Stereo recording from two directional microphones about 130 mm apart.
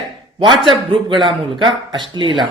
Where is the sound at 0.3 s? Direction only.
35° right (ahead or behind).